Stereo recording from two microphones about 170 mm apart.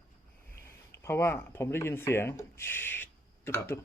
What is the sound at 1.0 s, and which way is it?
Speech, 15° left (ahead or behind).